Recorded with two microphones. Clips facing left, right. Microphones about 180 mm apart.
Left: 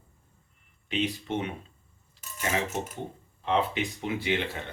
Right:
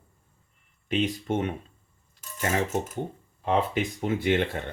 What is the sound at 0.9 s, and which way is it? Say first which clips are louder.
Speech: right 3 dB; 45° right (ahead or behind).